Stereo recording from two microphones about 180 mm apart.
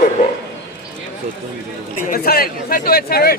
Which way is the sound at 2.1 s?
55° left (ahead or behind).